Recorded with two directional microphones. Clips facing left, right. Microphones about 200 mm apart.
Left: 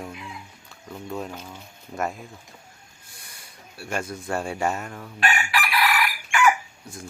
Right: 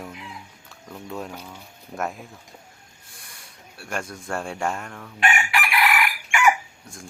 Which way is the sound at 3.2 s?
Centre (ahead or behind).